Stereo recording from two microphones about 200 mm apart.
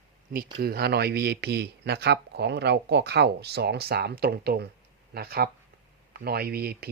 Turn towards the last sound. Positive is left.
turn(degrees=-50)  # may be behind; listen again after turning